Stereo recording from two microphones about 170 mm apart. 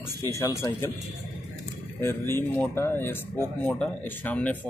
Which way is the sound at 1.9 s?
15° left (ahead or behind).